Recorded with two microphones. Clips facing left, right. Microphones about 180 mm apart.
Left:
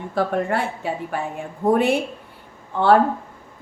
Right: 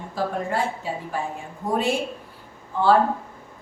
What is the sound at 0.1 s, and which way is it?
A woman's voice, 60° left (ahead or behind).